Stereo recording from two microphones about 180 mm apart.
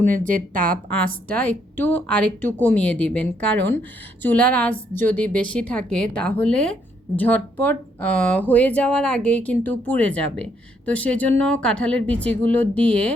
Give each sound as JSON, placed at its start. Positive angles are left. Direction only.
{"t": 0.0, "sound": "speech", "side_deg": -45}
{"t": 0.9, "sound": "speech", "side_deg": 10}